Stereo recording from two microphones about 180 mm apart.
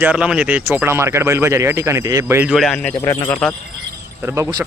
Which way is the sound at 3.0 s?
20° left (ahead or behind).